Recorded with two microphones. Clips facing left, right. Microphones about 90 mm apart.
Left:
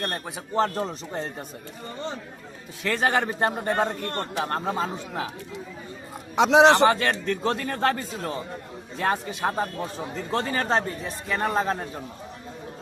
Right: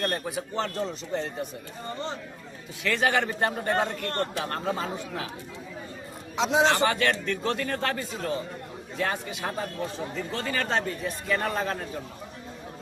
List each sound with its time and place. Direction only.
0.0 s a man's voice: 25° left (ahead or behind)
0.5 s a man's voice: 40° left (ahead or behind)
2.8 s a man's voice: 35° left (ahead or behind)
3.2 s a man's voice: 25° left (ahead or behind)
6.3 s a man's voice: 70° left (ahead or behind)
6.8 s a man's voice: 30° left (ahead or behind)